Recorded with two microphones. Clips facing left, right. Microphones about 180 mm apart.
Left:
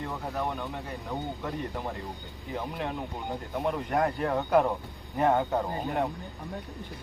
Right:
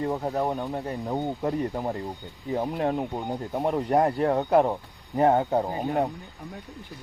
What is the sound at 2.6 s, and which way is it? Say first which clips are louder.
Speech: right 7 dB; 45° right (ahead or behind).